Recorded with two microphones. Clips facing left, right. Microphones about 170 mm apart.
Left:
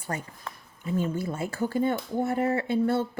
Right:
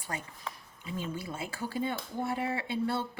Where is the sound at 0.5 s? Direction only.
Centre (ahead or behind).